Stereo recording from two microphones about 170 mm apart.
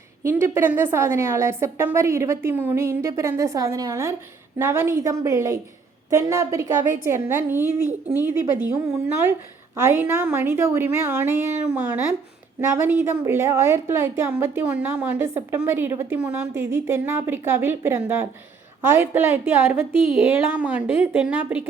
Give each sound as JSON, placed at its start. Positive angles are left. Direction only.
{"t": 0.2, "sound": "a woman's voice", "side_deg": -15}